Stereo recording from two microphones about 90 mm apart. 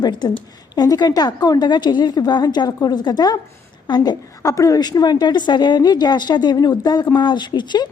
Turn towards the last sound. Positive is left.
turn(degrees=55)  # may be behind; listen again after turning